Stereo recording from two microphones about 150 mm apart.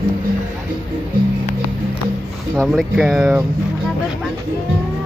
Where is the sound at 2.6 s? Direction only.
Centre (ahead or behind).